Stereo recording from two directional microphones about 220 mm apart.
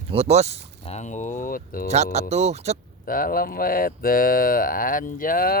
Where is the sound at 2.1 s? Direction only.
30° right (ahead or behind).